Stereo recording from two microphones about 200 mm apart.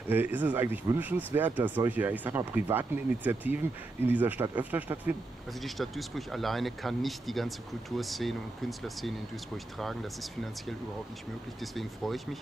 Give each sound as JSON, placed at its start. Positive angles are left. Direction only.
{"t": 0.1, "sound": "speech", "side_deg": -10}
{"t": 11.6, "sound": "speech", "side_deg": 0}